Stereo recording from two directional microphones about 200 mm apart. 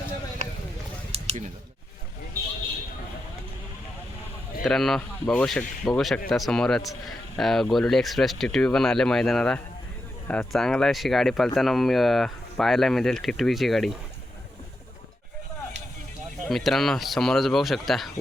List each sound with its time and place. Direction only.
1.1 s a sound: 30° right (ahead or behind)
4.6 s speech: centre (ahead or behind)
16.5 s speech: centre (ahead or behind)